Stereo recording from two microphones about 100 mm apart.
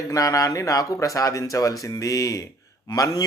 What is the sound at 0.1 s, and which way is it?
Speech, 35° left (ahead or behind).